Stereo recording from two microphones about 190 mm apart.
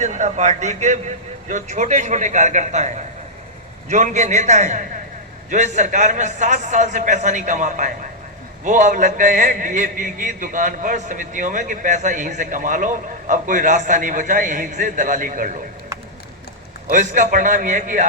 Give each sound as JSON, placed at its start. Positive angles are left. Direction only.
{"t": 0.0, "sound": "a man's voice", "side_deg": -40}
{"t": 16.8, "sound": "a man's voice", "side_deg": -40}